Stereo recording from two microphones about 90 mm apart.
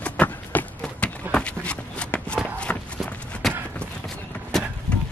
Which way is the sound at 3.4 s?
Centre (ahead or behind).